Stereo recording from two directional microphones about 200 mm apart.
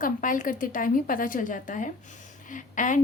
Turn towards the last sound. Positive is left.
turn(degrees=40)  # may be behind; listen again after turning